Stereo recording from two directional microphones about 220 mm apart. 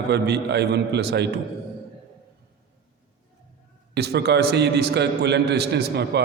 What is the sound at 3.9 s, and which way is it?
A man's voice, 50° right (ahead or behind).